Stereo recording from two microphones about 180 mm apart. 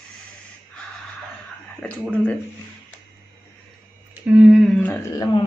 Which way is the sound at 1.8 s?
5° left (ahead or behind).